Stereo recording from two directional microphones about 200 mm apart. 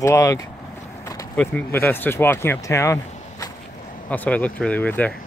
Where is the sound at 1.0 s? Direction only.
15° left (ahead or behind).